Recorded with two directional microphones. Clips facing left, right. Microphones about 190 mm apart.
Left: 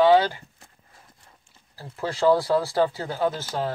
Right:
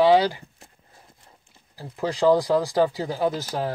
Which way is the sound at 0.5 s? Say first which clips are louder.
Right 2 dB; 25° right (ahead or behind).